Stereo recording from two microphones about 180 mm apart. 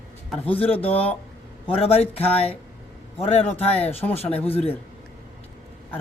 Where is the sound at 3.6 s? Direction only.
35° left (ahead or behind).